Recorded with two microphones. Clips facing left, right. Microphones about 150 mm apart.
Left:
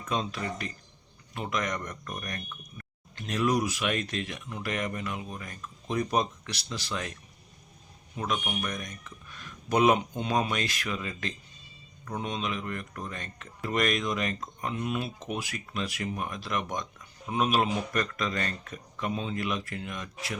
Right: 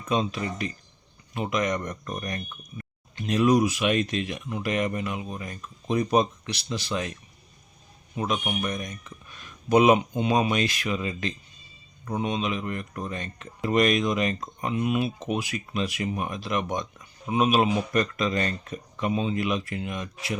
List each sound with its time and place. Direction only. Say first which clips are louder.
0.1 s speech: right 5 dB; 20° right (ahead or behind)
8.1 s speech: right 4 dB; 20° right (ahead or behind)